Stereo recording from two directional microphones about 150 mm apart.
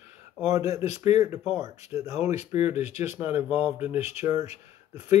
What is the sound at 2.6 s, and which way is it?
Speech, 45° left (ahead or behind).